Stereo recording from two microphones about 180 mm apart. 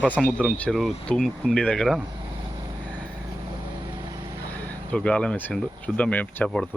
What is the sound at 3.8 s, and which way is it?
Vehicle, 20° right (ahead or behind).